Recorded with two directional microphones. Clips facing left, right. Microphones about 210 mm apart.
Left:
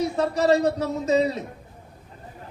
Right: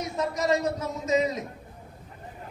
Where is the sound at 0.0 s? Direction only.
35° left (ahead or behind).